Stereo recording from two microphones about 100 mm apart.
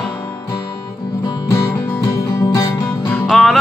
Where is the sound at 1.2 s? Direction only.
40° left (ahead or behind).